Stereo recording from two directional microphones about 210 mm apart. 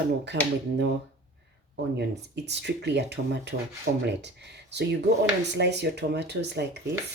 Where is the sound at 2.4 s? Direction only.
55° right (ahead or behind).